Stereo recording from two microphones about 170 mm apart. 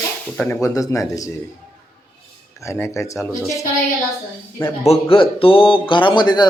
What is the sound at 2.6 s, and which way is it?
Speech, 15° left (ahead or behind).